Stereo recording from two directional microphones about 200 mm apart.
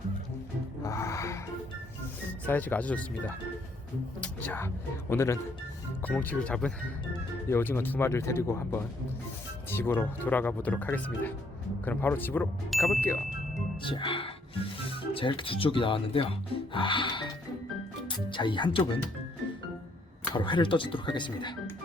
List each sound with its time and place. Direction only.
0.8 s music: 15° left (ahead or behind)
2.5 s speech: 10° left (ahead or behind)
13.8 s speech: 25° left (ahead or behind)
20.3 s speech: 25° left (ahead or behind)